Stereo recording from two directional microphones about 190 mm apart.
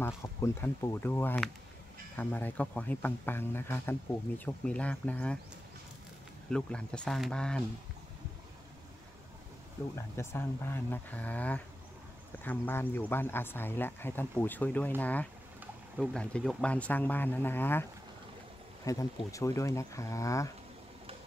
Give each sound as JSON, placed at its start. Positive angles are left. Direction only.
{"t": 0.0, "sound": "speech", "side_deg": 15}
{"t": 6.5, "sound": "speech", "side_deg": 5}
{"t": 9.9, "sound": "speech", "side_deg": 15}
{"t": 18.9, "sound": "speech", "side_deg": 15}